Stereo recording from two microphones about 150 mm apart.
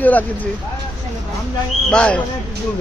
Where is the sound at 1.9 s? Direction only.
5° left (ahead or behind).